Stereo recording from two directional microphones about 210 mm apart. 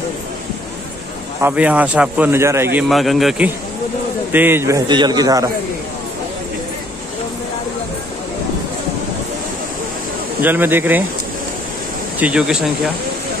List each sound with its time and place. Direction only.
1.4 s a man's voice: 5° right (ahead or behind)
2.8 s a man's voice: centre (ahead or behind); by 5.5 s 15° right (ahead or behind)
10.4 s a man's voice: 10° right (ahead or behind)
12.2 s a man's voice: 5° right (ahead or behind)